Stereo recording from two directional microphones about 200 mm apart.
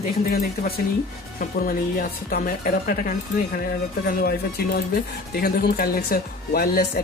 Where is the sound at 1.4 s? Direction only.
45° left (ahead or behind).